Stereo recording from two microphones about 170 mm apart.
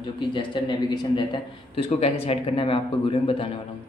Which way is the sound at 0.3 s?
25° left (ahead or behind).